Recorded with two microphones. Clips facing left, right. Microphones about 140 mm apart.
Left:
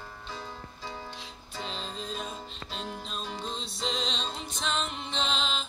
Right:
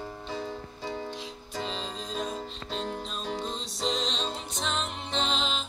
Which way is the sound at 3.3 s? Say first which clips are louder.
Right 3 dB; 40° right (ahead or behind).